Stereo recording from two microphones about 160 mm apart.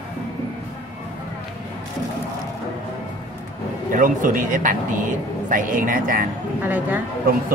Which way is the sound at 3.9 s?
55° right (ahead or behind).